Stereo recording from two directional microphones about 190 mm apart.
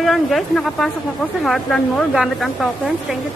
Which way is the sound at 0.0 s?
Centre (ahead or behind).